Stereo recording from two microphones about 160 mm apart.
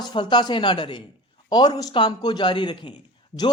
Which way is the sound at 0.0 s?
30° left (ahead or behind).